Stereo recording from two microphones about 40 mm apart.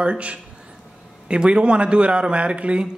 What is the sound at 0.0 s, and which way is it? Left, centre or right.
A man's voice, right.